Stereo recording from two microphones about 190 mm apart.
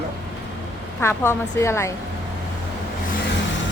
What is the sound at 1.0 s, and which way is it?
Speech, 10° left (ahead or behind).